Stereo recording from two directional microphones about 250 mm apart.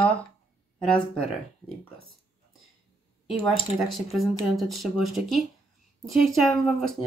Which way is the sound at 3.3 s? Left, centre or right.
Centre.